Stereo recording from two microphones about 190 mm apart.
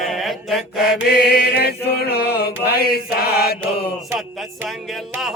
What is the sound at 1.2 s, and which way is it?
Chant, 55° left (ahead or behind).